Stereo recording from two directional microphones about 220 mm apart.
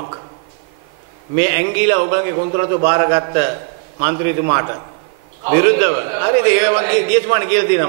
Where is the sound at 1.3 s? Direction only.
15° right (ahead or behind).